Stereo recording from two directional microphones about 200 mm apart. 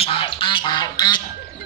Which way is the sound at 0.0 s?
25° left (ahead or behind).